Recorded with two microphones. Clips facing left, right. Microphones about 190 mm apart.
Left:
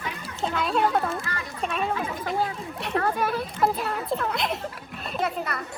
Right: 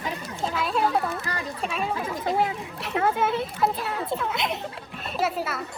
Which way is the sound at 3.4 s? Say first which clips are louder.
Left 1 dB; centre (ahead or behind).